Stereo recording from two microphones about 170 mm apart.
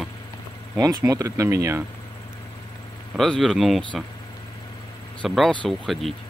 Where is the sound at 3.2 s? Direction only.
Centre (ahead or behind).